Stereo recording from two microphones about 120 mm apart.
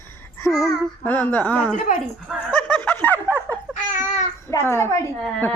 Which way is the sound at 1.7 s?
90° left.